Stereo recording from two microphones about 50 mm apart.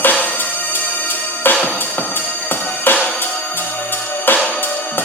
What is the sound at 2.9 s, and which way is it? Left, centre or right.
Music, left.